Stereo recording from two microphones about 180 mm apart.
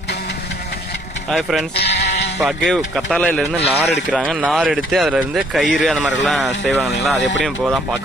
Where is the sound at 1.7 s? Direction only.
60° left (ahead or behind).